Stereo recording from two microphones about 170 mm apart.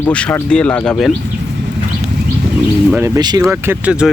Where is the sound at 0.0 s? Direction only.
5° left (ahead or behind).